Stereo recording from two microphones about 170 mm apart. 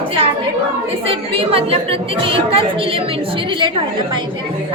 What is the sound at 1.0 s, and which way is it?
A woman's voice, 35° right (ahead or behind).